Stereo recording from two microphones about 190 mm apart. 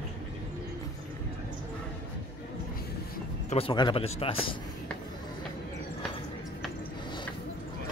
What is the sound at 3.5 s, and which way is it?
Speech, 30° left (ahead or behind).